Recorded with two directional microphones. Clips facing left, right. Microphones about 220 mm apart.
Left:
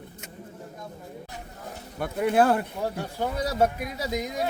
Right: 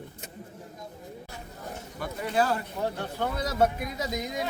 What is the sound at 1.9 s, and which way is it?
Speech, 55° left (ahead or behind).